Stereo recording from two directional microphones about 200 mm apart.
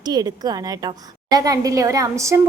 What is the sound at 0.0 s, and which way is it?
A woman's voice, 20° right (ahead or behind).